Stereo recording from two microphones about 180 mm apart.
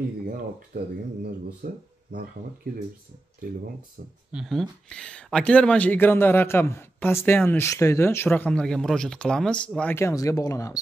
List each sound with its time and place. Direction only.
0.7 s speech: 65° right (ahead or behind)
3.4 s speech: 50° right (ahead or behind)
4.3 s speech: centre (ahead or behind); by 10.8 s 20° left (ahead or behind)